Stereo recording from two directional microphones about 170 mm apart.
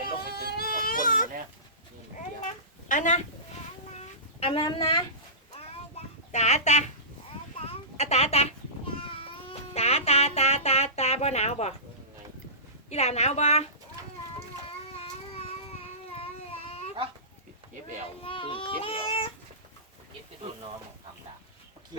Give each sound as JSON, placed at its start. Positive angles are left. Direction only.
{"t": 0.0, "sound": "baby cry", "side_deg": 65}
{"t": 2.9, "sound": "speech", "side_deg": 45}
{"t": 3.9, "sound": "a sound", "side_deg": 40}
{"t": 6.3, "sound": "a woman's voice", "side_deg": 40}
{"t": 7.6, "sound": "a sound", "side_deg": 35}
{"t": 12.9, "sound": "a woman's voice", "side_deg": 40}
{"t": 15.4, "sound": "baby cry", "side_deg": 35}
{"t": 18.2, "sound": "child singing", "side_deg": 30}